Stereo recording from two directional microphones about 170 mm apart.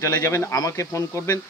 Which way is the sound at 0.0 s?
20° left (ahead or behind).